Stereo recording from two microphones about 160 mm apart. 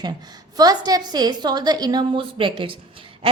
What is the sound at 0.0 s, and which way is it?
A woman's voice, 25° right (ahead or behind).